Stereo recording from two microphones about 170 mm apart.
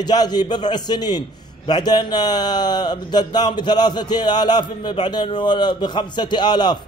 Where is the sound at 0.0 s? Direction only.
25° left (ahead or behind).